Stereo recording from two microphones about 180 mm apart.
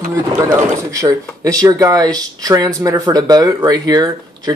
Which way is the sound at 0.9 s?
20° right (ahead or behind).